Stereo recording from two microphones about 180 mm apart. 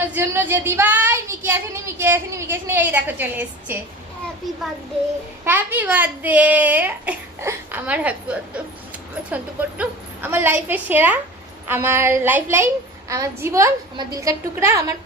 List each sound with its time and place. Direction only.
0.1 s speech: 10° right (ahead or behind)
5.5 s speech: 10° right (ahead or behind)